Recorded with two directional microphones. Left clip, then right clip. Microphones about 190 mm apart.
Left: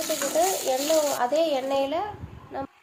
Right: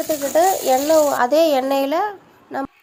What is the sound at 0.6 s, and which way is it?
A woman's voice, 60° right (ahead or behind).